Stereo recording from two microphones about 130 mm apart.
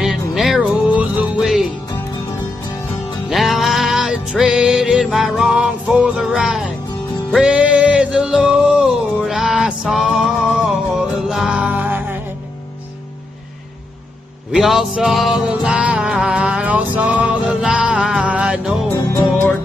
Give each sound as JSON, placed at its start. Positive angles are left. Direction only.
{"t": 0.0, "sound": "music", "side_deg": -5}
{"t": 3.3, "sound": "music", "side_deg": 0}
{"t": 14.5, "sound": "music", "side_deg": 0}
{"t": 18.9, "sound": "music", "side_deg": 20}